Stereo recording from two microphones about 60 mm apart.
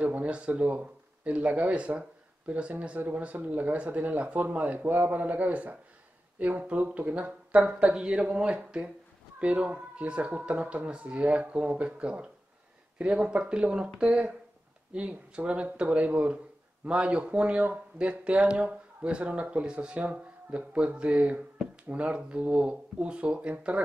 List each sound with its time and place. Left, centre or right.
0.0 s speech: right